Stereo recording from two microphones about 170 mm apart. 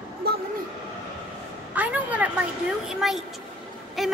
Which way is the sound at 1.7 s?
10° right (ahead or behind).